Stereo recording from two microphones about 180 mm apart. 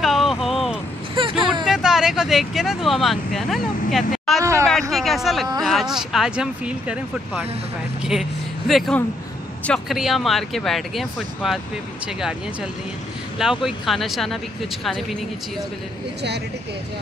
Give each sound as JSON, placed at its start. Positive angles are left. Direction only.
{"t": 0.0, "sound": "vehicle", "side_deg": 0}
{"t": 1.2, "sound": "vehicle", "side_deg": -30}
{"t": 1.5, "sound": "speech", "side_deg": 0}
{"t": 4.4, "sound": "a sound", "side_deg": -15}
{"t": 4.9, "sound": "speech", "side_deg": 0}
{"t": 13.4, "sound": "speech", "side_deg": -5}